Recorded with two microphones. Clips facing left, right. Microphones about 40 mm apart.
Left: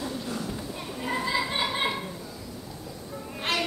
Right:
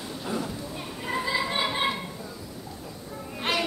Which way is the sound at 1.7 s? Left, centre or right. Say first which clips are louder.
Right 1 dB; centre.